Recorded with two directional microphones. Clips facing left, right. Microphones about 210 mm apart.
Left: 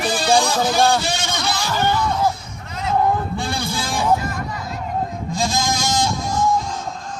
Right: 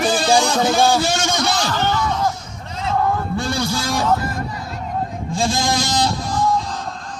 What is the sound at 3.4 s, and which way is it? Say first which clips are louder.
Music: right 3 dB; 55° left (ahead or behind).